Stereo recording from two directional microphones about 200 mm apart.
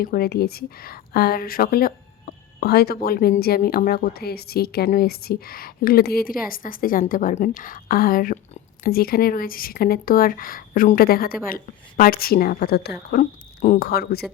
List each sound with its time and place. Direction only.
0.0 s speech: 50° left (ahead or behind)